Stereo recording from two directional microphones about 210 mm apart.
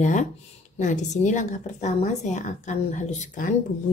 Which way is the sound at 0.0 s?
35° left (ahead or behind).